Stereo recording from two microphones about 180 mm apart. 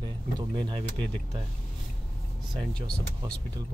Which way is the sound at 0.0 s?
25° right (ahead or behind).